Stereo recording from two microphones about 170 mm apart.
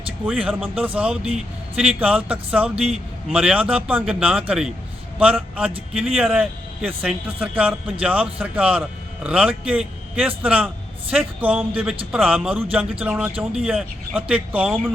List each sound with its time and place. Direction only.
0.3 s a man's voice: centre (ahead or behind)